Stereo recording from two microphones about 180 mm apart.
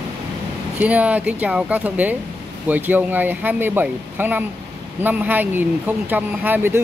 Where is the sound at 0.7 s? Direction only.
10° right (ahead or behind).